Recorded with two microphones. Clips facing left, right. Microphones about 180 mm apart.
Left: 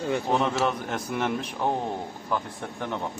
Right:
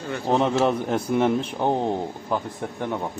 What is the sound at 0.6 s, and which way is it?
Speech, 35° right (ahead or behind).